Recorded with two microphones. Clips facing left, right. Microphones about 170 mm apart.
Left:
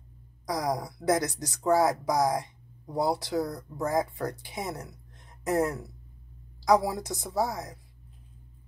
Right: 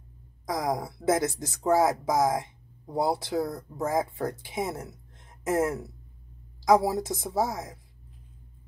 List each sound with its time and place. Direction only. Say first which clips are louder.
0.5 s speech: right 1 dB; 20° right (ahead or behind)